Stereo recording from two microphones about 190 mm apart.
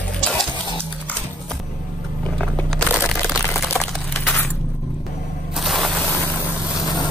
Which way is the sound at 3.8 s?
5° left (ahead or behind).